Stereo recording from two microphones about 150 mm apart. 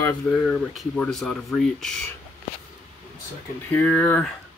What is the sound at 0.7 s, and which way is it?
Speech, centre (ahead or behind).